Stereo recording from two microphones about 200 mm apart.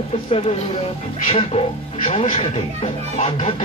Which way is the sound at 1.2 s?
30° left (ahead or behind).